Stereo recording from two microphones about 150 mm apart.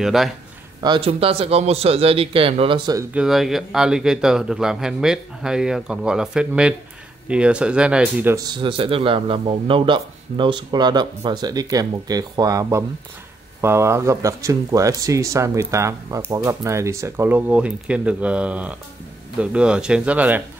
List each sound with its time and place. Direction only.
0.0 s speech: centre (ahead or behind)
0.7 s a man's voice: 30° right (ahead or behind)
3.1 s speech: 5° right (ahead or behind)
8.4 s speech: 30° right (ahead or behind); by 20.4 s 10° right (ahead or behind)